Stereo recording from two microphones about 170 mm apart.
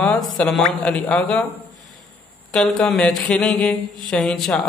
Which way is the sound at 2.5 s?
5° left (ahead or behind).